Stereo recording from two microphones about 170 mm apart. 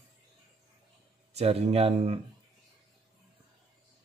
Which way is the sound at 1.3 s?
35° right (ahead or behind).